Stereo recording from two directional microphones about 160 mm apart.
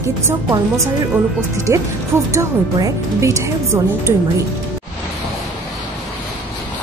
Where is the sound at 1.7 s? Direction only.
20° right (ahead or behind).